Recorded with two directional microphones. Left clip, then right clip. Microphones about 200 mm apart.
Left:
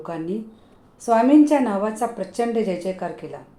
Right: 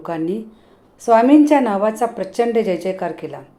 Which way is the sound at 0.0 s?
25° right (ahead or behind).